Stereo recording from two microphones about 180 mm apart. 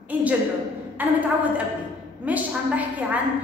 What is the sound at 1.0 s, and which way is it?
Mantra, 10° right (ahead or behind).